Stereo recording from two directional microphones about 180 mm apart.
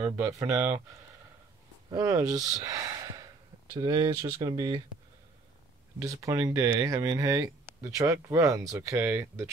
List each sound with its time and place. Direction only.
0.0 s speech: 15° right (ahead or behind)
1.9 s speech: 20° right (ahead or behind)
5.9 s speech: 20° right (ahead or behind)